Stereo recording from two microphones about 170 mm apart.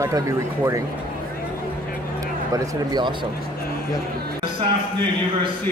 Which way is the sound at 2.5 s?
25° right (ahead or behind).